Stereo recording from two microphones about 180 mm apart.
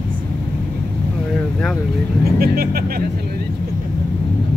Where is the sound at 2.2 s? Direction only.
60° right (ahead or behind).